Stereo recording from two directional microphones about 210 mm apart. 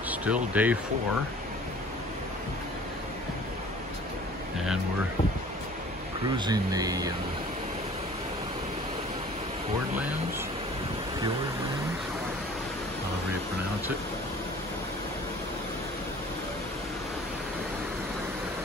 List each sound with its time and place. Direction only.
0.1 s speech: 5° right (ahead or behind)
6.3 s speech: 20° right (ahead or behind)